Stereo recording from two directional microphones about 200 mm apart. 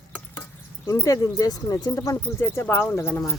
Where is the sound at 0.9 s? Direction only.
15° left (ahead or behind).